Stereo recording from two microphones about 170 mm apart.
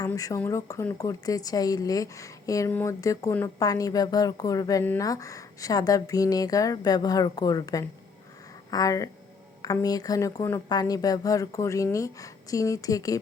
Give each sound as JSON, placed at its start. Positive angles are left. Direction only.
{"t": 0.1, "sound": "speech", "side_deg": 15}